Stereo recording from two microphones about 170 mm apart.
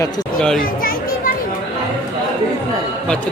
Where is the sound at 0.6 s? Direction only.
55° left (ahead or behind).